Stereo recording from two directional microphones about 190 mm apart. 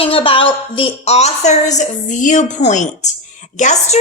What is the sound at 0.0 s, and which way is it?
A woman's voice, 30° left (ahead or behind).